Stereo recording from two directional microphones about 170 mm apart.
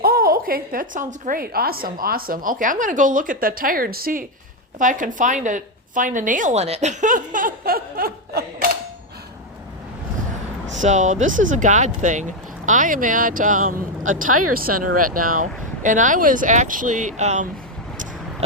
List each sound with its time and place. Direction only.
0.0 s a woman's voice: 60° right (ahead or behind)
10.7 s speech: 45° right (ahead or behind)